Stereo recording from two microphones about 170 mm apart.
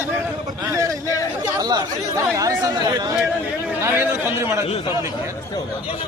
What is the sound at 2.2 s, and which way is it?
A man's voice, 20° right (ahead or behind).